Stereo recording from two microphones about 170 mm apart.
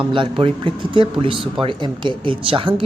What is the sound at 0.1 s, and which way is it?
Speech, 30° right (ahead or behind).